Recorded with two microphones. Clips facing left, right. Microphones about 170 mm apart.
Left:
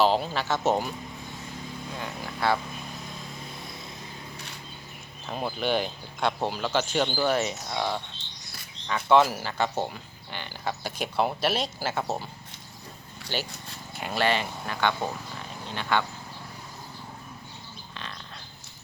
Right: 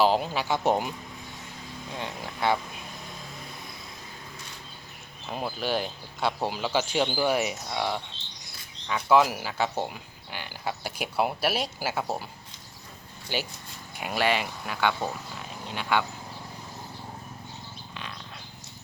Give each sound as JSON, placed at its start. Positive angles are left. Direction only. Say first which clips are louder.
{"t": 0.0, "sound": "speech", "louder": "even", "side_deg": -10}
{"t": 2.0, "sound": "speech", "louder": "right 1 dB", "side_deg": -20}
{"t": 5.2, "sound": "speech", "louder": "left 2 dB", "side_deg": -5}
{"t": 9.0, "sound": "speech", "louder": "left 1 dB", "side_deg": -10}
{"t": 13.3, "sound": "speech", "louder": "right 1 dB", "side_deg": -10}